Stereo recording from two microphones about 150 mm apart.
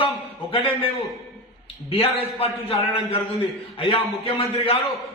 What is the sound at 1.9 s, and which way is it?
A man's voice, 35° left (ahead or behind).